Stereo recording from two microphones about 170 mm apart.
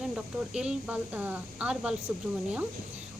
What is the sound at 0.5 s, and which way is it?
Speech, 5° right (ahead or behind).